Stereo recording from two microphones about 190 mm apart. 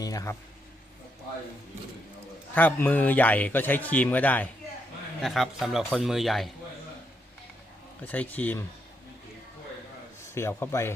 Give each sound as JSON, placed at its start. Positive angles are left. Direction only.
{"t": 0.0, "sound": "speech", "side_deg": 20}
{"t": 2.6, "sound": "speech", "side_deg": 10}
{"t": 8.0, "sound": "speech", "side_deg": 10}
{"t": 10.3, "sound": "speech", "side_deg": 15}